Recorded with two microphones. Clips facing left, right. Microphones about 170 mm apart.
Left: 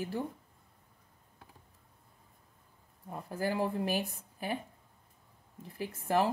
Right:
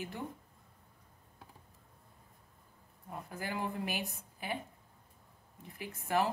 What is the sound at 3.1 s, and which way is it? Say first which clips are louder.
Speech: left 6 dB; 35° left (ahead or behind).